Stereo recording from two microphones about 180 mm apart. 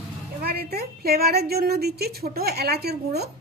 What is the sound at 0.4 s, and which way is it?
A woman's voice, 60° right (ahead or behind).